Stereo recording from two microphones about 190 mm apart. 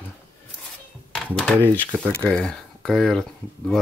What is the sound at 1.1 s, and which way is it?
Speech, centre (ahead or behind).